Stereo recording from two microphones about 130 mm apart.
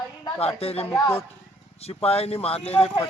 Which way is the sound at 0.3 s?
50° left (ahead or behind).